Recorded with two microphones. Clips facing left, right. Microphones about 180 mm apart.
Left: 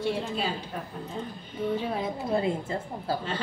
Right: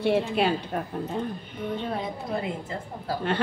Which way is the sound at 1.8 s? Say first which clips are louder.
Even; centre (ahead or behind).